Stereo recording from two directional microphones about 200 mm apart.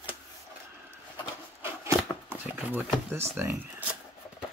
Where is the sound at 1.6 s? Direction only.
10° right (ahead or behind).